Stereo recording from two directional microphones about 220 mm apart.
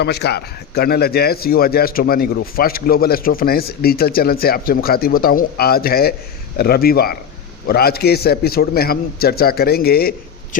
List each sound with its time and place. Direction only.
0.0 s speech: 50° left (ahead or behind)